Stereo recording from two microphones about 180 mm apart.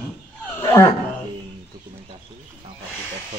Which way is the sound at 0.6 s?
15° left (ahead or behind).